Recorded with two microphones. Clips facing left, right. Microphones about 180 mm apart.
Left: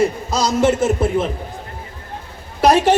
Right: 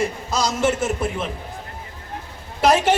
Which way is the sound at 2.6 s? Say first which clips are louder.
Left 4 dB; 40° left (ahead or behind).